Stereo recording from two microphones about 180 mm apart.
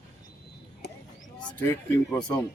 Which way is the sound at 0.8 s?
70° left (ahead or behind).